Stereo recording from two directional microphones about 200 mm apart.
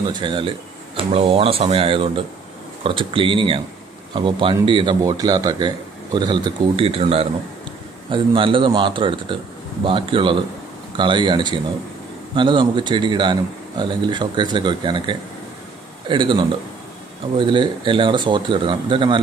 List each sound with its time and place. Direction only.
0.1 s speech: 25° right (ahead or behind)